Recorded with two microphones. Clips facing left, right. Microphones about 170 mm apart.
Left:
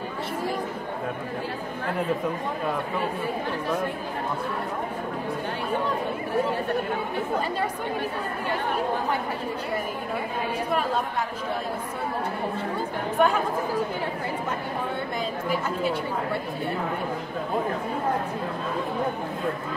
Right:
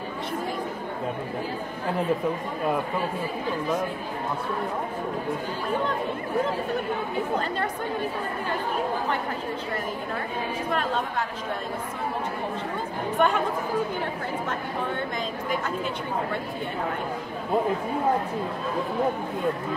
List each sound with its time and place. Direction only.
13.2 s speech: 5° left (ahead or behind)